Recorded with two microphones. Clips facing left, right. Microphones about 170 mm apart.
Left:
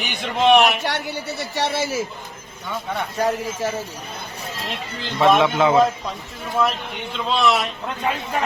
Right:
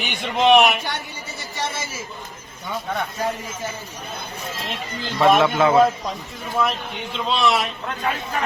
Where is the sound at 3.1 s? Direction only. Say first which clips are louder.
Left 4 dB; 90° left.